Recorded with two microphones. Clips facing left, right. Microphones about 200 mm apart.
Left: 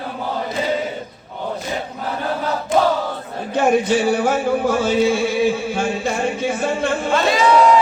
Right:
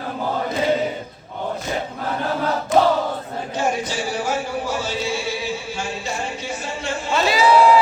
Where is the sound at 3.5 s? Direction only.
60° left (ahead or behind).